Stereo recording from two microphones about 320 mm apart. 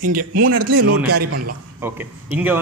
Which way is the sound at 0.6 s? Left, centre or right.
Right.